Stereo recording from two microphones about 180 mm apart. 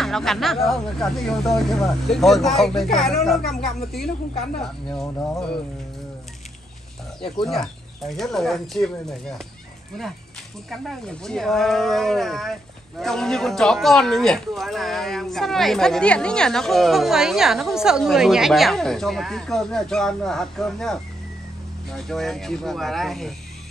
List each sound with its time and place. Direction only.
0.0 s speech: centre (ahead or behind)
5.0 s speech: 15° left (ahead or behind)
7.4 s speech: centre (ahead or behind)
10.7 s speech: centre (ahead or behind)